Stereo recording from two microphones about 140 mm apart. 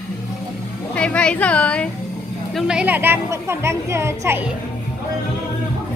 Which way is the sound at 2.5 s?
10° right (ahead or behind).